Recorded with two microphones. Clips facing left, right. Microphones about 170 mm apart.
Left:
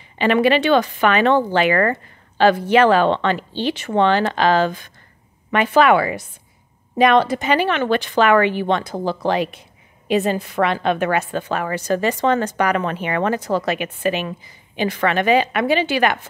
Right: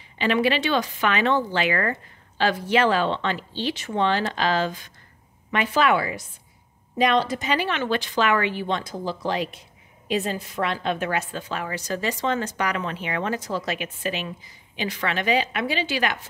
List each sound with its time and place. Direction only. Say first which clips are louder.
0.2 s speech: left 6 dB; 55° left (ahead or behind)